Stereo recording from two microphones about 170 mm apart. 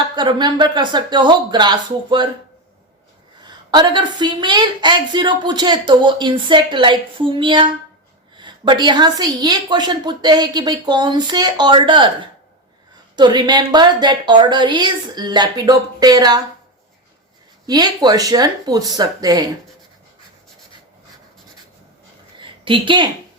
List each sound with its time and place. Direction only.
0.2 s a woman's voice: 25° right (ahead or behind)
3.4 s a woman's voice: 25° right (ahead or behind)
17.7 s a woman's voice: 25° right (ahead or behind)
22.4 s a sound: 30° right (ahead or behind)